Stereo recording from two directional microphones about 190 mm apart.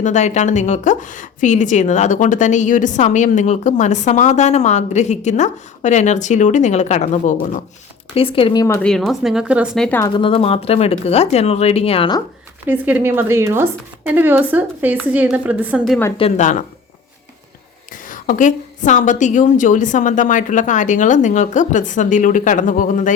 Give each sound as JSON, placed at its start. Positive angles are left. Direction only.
{"t": 0.0, "sound": "a woman's voice", "side_deg": 40}
{"t": 8.8, "sound": "speech", "side_deg": 0}
{"t": 9.8, "sound": "speech", "side_deg": 10}
{"t": 10.2, "sound": "a woman's voice", "side_deg": 30}
{"t": 12.6, "sound": "speech", "side_deg": -10}
{"t": 16.1, "sound": "a woman's voice", "side_deg": 35}
{"t": 18.1, "sound": "a woman's voice", "side_deg": 45}